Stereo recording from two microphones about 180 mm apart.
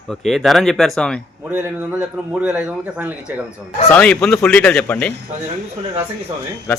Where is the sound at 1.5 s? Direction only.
10° right (ahead or behind).